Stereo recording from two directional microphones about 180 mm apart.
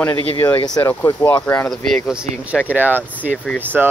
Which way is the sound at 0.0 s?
10° left (ahead or behind).